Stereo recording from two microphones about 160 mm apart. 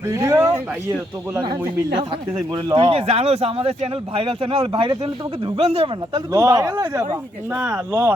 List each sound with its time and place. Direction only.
0.1 s speech: 20° right (ahead or behind)
2.6 s speech: 30° right (ahead or behind)
6.3 s speech: 20° right (ahead or behind)